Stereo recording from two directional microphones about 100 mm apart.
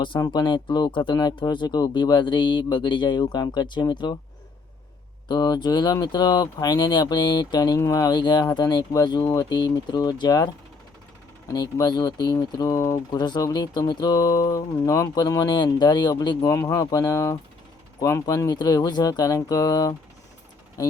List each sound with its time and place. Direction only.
0.2 s speech: 50° left (ahead or behind)
5.3 s speech: 45° left (ahead or behind)
11.5 s speech: 45° left (ahead or behind)
12.5 s speech: 35° left (ahead or behind)
16.4 s speech: 30° left (ahead or behind)